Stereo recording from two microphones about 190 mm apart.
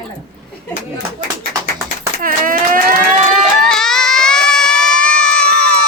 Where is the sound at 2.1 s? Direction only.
45° right (ahead or behind).